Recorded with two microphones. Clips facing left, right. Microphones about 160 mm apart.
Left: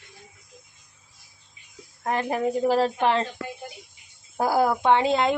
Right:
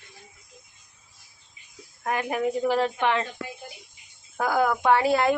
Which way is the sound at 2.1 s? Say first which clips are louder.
Left 1 dB; 30° left (ahead or behind).